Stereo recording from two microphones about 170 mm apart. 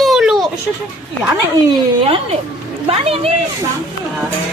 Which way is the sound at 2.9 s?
35° right (ahead or behind).